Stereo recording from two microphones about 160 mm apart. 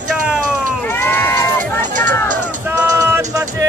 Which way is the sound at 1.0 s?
15° left (ahead or behind).